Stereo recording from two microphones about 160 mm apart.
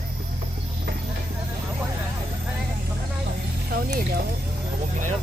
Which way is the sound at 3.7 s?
65° right (ahead or behind).